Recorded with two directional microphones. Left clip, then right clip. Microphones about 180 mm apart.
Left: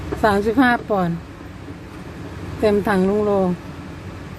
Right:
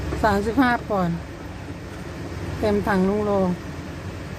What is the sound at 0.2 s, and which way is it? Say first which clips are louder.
Speech: left 4 dB; 15° left (ahead or behind).